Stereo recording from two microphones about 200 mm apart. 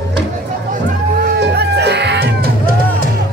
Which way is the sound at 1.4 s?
55° right (ahead or behind).